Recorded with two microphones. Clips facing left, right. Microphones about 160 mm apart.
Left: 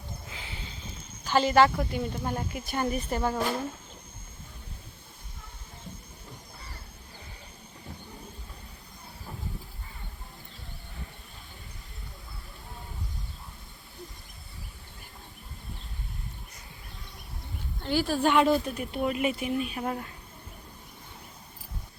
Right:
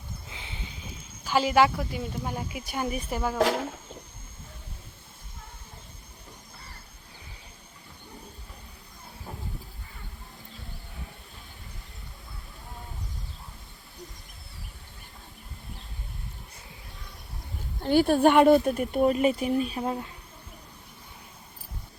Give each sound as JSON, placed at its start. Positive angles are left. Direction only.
{"t": 0.3, "sound": "a sound", "side_deg": -20}
{"t": 1.2, "sound": "speech", "side_deg": -5}
{"t": 3.3, "sound": "speech", "side_deg": -90}
{"t": 17.7, "sound": "speech", "side_deg": -50}
{"t": 19.8, "sound": "speech", "side_deg": -20}